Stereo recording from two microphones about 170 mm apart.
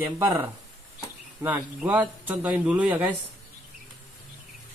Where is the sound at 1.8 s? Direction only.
10° right (ahead or behind).